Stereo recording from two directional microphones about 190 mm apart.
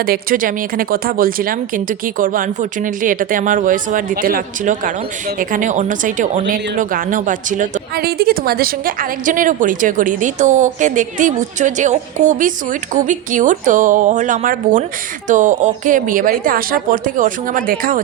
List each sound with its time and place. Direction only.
0.0 s speech: 50° right (ahead or behind)